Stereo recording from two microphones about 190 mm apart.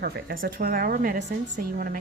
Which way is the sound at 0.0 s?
55° right (ahead or behind).